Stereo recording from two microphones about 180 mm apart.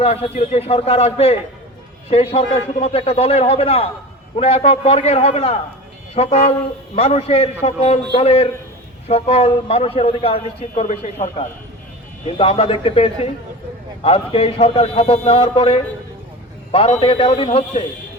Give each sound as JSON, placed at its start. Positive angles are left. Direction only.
{"t": 0.0, "sound": "a man's voice", "side_deg": 35}
{"t": 10.8, "sound": "a man's voice", "side_deg": 45}
{"t": 12.4, "sound": "a man's voice", "side_deg": 30}